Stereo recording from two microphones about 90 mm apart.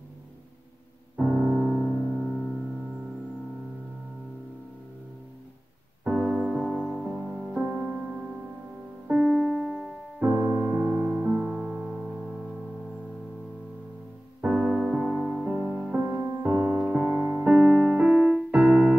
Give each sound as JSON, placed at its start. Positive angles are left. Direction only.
{"t": 1.2, "sound": "music", "side_deg": -15}
{"t": 6.0, "sound": "music", "side_deg": -10}
{"t": 7.2, "sound": "music", "side_deg": 5}
{"t": 9.0, "sound": "music", "side_deg": -10}
{"t": 10.2, "sound": "piano", "side_deg": -20}
{"t": 11.5, "sound": "music", "side_deg": -5}
{"t": 14.4, "sound": "music", "side_deg": -10}
{"t": 15.9, "sound": "music", "side_deg": -20}